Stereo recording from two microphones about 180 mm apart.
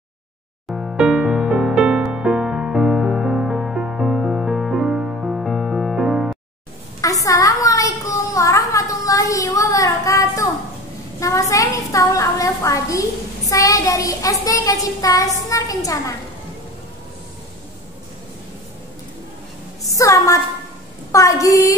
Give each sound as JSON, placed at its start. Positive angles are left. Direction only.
{"t": 0.7, "sound": "music", "side_deg": 0}
{"t": 7.0, "sound": "a sound", "side_deg": 20}
{"t": 8.4, "sound": "child singing", "side_deg": 20}
{"t": 11.1, "sound": "a sound", "side_deg": 15}
{"t": 13.5, "sound": "child singing", "side_deg": 20}
{"t": 19.9, "sound": "a woman's voice", "side_deg": 20}